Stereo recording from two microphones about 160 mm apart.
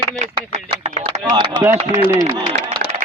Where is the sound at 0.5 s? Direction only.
45° right (ahead or behind).